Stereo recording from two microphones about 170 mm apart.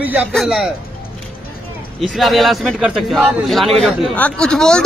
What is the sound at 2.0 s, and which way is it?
Speech, centre (ahead or behind).